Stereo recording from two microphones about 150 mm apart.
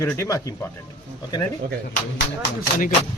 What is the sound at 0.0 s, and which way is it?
Speech, 20° left (ahead or behind).